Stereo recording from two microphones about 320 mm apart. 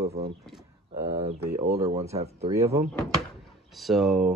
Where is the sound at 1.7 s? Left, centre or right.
Centre.